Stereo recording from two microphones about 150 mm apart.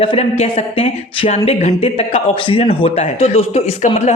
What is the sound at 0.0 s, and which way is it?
Speech, 40° left (ahead or behind).